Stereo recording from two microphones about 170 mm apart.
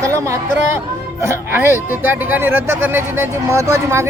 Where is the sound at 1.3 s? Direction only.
15° right (ahead or behind).